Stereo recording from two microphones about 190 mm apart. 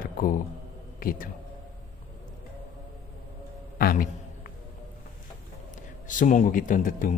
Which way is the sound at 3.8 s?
50° left (ahead or behind).